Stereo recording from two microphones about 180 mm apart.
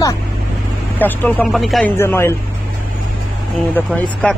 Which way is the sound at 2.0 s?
15° left (ahead or behind).